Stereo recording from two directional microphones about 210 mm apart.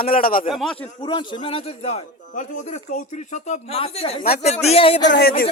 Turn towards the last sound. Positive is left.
turn(degrees=55)  # may be behind; listen again after turning